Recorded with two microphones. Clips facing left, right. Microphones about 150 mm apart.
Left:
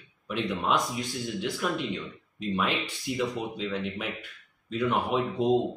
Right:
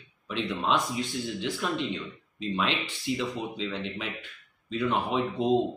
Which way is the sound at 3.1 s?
60° left (ahead or behind).